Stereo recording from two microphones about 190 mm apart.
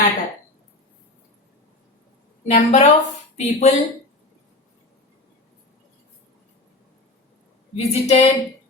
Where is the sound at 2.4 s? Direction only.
35° left (ahead or behind).